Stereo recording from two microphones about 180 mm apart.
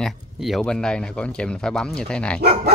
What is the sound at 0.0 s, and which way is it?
Speech, centre (ahead or behind).